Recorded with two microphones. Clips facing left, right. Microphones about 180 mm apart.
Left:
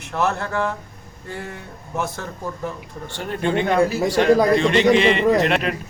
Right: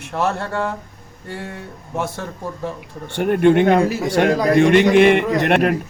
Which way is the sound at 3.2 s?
60° right (ahead or behind).